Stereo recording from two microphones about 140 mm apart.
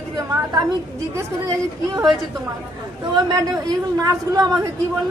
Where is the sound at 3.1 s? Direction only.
30° right (ahead or behind).